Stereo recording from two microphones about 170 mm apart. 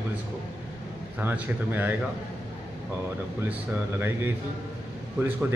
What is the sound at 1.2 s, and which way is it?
Speech, 10° right (ahead or behind).